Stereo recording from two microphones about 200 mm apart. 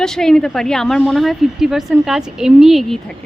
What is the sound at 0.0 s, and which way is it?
Speech, 5° left (ahead or behind).